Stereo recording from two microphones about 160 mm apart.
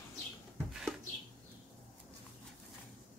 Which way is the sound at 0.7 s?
Centre (ahead or behind).